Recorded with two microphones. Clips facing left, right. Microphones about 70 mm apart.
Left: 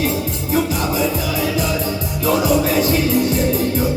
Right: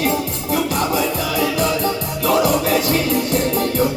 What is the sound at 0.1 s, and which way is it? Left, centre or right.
Music, right.